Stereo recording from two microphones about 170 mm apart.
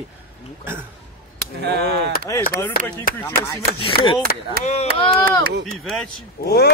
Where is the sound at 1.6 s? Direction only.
75° right (ahead or behind).